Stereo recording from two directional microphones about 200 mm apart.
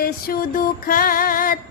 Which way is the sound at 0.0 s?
45° left (ahead or behind).